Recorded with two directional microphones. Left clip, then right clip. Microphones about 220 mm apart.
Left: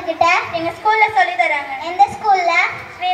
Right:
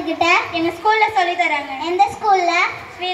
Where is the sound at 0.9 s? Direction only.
50° right (ahead or behind).